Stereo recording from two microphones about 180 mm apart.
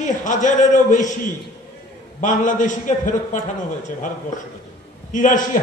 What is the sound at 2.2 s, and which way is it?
A man's voice, 45° left (ahead or behind).